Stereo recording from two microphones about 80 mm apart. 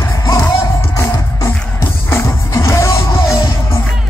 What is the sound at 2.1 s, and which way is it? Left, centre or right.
Music, left.